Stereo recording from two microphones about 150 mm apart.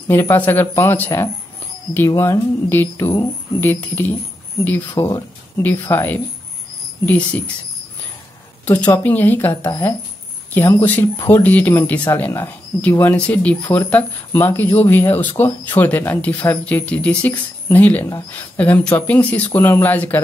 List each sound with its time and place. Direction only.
0.1 s speech: 15° left (ahead or behind)
8.9 s speech: 15° left (ahead or behind)